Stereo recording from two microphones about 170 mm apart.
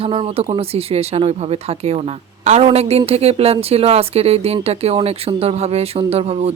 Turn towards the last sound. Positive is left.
turn(degrees=-35)  # may be behind; listen again after turning